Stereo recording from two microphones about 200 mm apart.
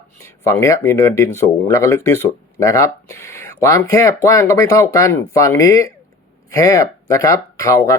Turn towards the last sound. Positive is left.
turn(degrees=15)  # may be behind; listen again after turning